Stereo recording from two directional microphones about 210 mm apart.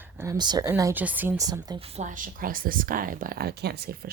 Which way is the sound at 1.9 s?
35° right (ahead or behind).